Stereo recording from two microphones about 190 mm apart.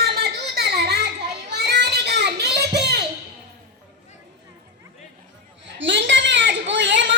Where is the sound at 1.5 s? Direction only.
60° right (ahead or behind).